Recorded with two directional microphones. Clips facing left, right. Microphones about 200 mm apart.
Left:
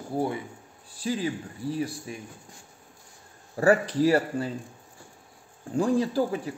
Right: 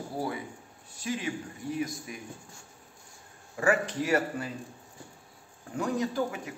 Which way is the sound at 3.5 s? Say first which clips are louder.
Left 6 dB; 35° left (ahead or behind).